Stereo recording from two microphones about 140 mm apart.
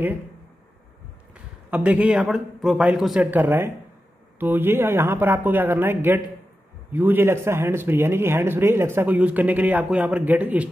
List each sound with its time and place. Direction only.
1.3 s a man's voice: 10° right (ahead or behind)